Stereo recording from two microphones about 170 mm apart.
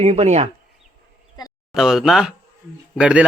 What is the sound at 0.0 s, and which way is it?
Speech, 40° right (ahead or behind).